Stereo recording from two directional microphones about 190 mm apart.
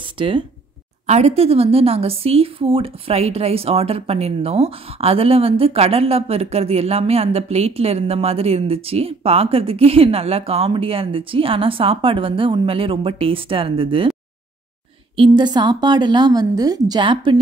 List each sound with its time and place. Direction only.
0.0 s a sound: 25° right (ahead or behind)
1.0 s speech: 35° right (ahead or behind)
15.1 s a woman's voice: 25° right (ahead or behind)